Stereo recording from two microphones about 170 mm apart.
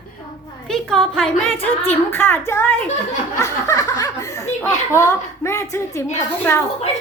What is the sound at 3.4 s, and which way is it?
Laughter, 20° left (ahead or behind).